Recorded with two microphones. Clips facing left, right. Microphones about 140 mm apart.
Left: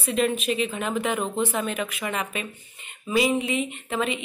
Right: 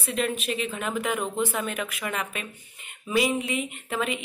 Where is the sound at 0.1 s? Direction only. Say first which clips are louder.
Left 4 dB; 5° left (ahead or behind).